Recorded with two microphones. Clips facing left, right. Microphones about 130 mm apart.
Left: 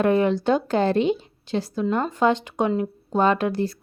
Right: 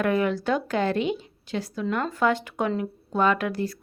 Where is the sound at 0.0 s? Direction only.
30° left (ahead or behind).